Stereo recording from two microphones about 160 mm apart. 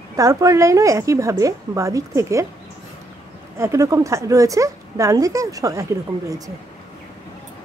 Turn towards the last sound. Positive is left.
turn(degrees=-20)  # may be behind; listen again after turning